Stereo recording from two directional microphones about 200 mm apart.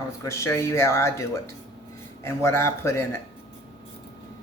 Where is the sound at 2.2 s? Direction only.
10° left (ahead or behind).